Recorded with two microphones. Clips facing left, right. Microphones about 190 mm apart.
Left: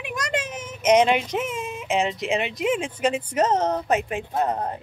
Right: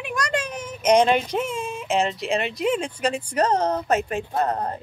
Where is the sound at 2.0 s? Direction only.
15° left (ahead or behind).